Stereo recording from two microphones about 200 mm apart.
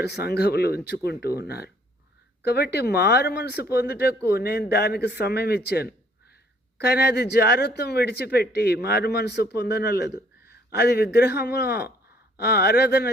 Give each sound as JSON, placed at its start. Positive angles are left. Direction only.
{"t": 0.0, "sound": "speech", "side_deg": 55}